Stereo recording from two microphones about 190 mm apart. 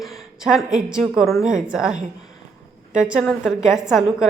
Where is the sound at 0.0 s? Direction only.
Centre (ahead or behind).